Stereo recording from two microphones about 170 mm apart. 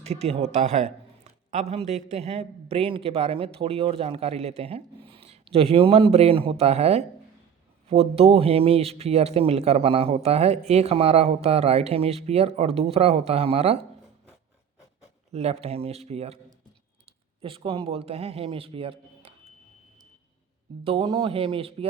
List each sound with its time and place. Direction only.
0.0 s a man's voice: 40° right (ahead or behind)
15.3 s a man's voice: 40° right (ahead or behind)
17.4 s a man's voice: 30° right (ahead or behind)
20.8 s a man's voice: 30° right (ahead or behind)